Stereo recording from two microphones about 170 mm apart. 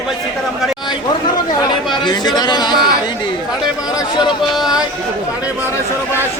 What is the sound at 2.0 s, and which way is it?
Speech, 25° left (ahead or behind).